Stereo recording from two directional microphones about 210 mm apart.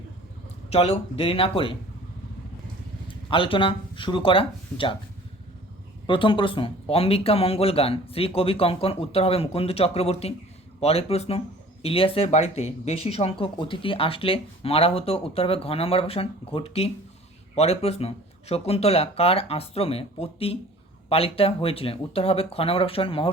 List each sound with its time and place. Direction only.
0.7 s speech: 30° left (ahead or behind)
3.1 s speech: 25° left (ahead or behind)
6.1 s speech: 25° left (ahead or behind)